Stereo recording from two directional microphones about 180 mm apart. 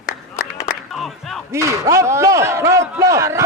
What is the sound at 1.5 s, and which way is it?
Speech, 15° right (ahead or behind).